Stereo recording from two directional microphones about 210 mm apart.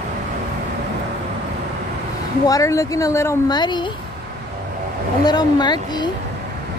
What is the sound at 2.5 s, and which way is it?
Speech, 15° left (ahead or behind).